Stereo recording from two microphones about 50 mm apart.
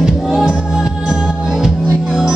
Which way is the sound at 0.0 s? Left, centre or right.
Centre.